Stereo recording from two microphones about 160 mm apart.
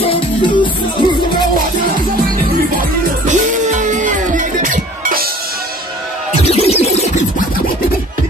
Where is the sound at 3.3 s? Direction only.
50° right (ahead or behind).